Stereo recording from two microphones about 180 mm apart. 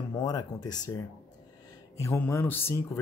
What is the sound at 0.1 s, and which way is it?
Speech, 20° left (ahead or behind).